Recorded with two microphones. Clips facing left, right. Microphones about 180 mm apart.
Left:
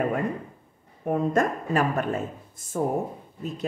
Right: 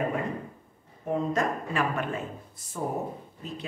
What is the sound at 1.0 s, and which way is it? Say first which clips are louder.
A woman's voice: left 4 dB; 55° left (ahead or behind).